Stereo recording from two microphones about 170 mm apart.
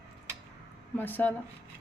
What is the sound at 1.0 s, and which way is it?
Speech, 10° left (ahead or behind).